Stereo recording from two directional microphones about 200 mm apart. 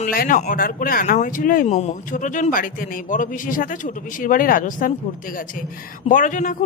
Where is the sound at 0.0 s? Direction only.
45° left (ahead or behind).